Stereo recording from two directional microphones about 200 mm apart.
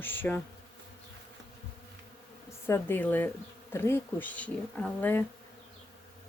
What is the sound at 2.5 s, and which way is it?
A woman's voice, 15° left (ahead or behind).